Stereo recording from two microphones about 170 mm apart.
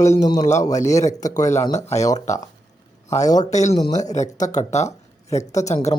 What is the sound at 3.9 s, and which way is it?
Speech, 45° left (ahead or behind).